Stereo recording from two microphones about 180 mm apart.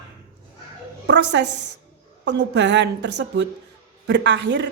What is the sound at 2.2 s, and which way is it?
A woman's voice, 75° right (ahead or behind).